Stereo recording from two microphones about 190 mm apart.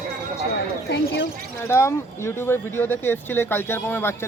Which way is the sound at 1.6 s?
15° left (ahead or behind).